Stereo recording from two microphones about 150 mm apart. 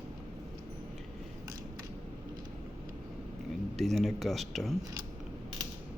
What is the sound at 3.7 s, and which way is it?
Speech, centre (ahead or behind).